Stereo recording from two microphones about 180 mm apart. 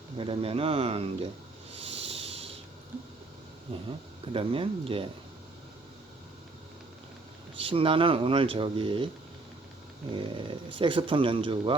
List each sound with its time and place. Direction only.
0.2 s speech: 30° right (ahead or behind)
1.7 s a sound: 35° right (ahead or behind)
4.3 s speech: 30° right (ahead or behind)
7.6 s speech: 30° right (ahead or behind)
10.2 s speech: 30° right (ahead or behind)